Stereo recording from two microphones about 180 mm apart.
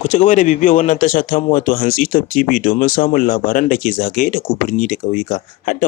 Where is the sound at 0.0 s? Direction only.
45° left (ahead or behind).